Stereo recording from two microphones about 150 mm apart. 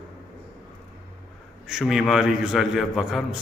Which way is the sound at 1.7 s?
5° right (ahead or behind).